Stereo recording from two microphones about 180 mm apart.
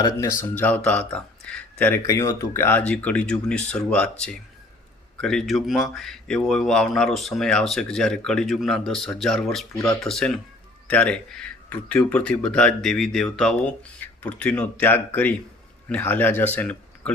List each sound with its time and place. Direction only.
0.0 s speech: 20° left (ahead or behind)